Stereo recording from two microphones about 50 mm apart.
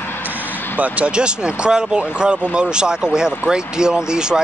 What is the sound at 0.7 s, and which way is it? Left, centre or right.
Speech, right.